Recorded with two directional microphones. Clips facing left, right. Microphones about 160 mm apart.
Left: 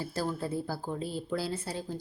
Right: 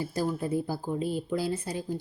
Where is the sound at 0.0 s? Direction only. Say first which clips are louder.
Right 3 dB; 15° right (ahead or behind).